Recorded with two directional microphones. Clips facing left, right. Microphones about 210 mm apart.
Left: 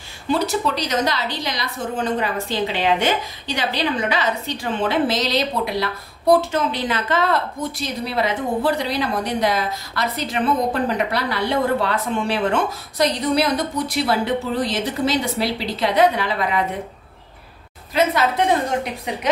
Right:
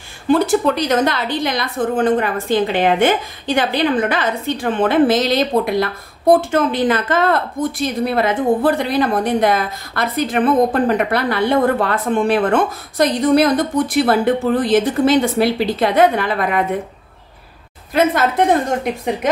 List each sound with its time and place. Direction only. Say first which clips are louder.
0.3 s a woman's voice: right 6 dB; 55° right (ahead or behind)
17.9 s a woman's voice: right 3 dB; 50° right (ahead or behind)